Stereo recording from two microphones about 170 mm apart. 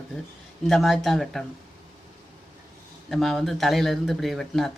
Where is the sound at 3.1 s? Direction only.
Centre (ahead or behind).